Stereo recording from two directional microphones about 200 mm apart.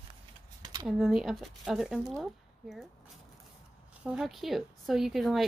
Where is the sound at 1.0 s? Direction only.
Centre (ahead or behind).